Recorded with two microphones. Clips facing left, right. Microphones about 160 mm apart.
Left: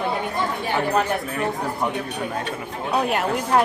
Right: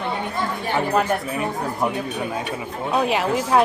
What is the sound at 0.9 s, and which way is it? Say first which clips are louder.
Speech: right 1 dB; 5° right (ahead or behind).